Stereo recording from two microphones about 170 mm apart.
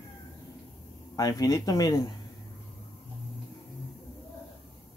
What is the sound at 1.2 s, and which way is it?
Speech, 20° left (ahead or behind).